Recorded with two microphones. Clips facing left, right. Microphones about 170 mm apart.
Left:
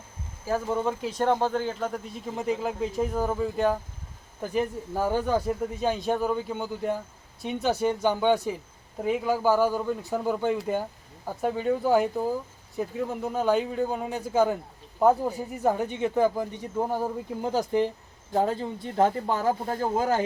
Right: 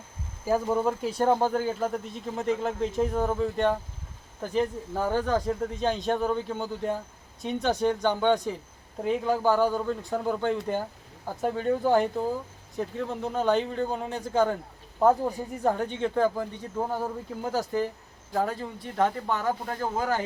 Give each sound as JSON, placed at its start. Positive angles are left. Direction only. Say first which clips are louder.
{"t": 0.4, "sound": "speech", "louder": "right 2 dB", "side_deg": -10}